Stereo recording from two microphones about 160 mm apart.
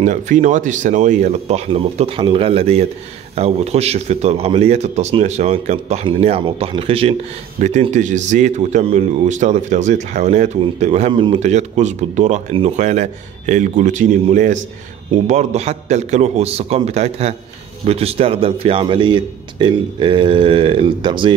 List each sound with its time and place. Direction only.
0.0 s speech: 50° right (ahead or behind)
1.7 s a man's voice: 35° right (ahead or behind)
7.5 s a man's voice: 50° right (ahead or behind)
11.4 s a man's voice: 45° right (ahead or behind); by 21.3 s 30° right (ahead or behind)